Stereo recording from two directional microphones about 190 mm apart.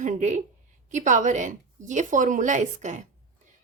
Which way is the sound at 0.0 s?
40° right (ahead or behind).